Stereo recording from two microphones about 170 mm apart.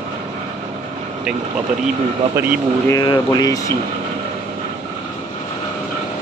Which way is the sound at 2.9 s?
20° left (ahead or behind).